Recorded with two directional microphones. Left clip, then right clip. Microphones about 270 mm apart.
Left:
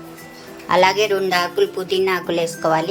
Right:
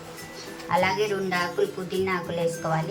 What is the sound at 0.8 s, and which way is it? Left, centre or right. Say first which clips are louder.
A woman's voice: left 8 dB; left.